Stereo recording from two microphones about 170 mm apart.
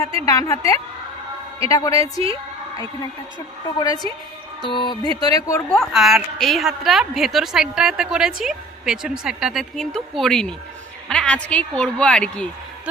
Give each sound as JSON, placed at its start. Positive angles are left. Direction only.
{"t": 0.3, "sound": "music", "side_deg": 20}
{"t": 3.8, "sound": "music", "side_deg": 25}
{"t": 5.7, "sound": "a woman's voice", "side_deg": 0}